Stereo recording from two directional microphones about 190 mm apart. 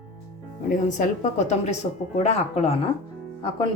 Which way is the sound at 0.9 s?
40° left (ahead or behind).